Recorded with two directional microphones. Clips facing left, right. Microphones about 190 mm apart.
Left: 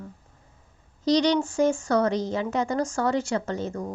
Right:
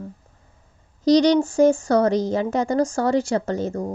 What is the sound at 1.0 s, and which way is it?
Speech, 40° right (ahead or behind).